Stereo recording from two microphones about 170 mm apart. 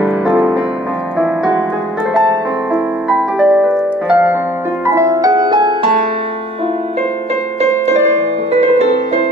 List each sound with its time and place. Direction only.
0.0 s music: centre (ahead or behind); by 5.9 s 25° right (ahead or behind)
7.6 s music: 40° right (ahead or behind)